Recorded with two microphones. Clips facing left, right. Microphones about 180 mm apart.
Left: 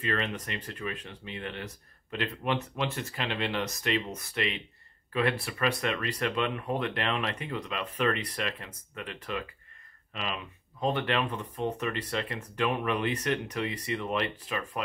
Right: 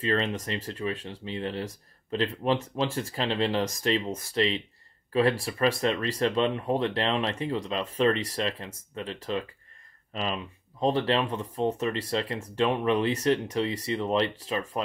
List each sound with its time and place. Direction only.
0.0 s speech: 30° right (ahead or behind)